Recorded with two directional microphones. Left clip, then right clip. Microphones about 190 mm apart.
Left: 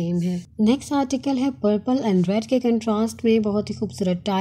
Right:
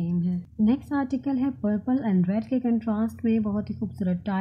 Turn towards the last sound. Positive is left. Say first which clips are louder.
# left 7 dB
turn(degrees=10)  # may be behind; listen again after turning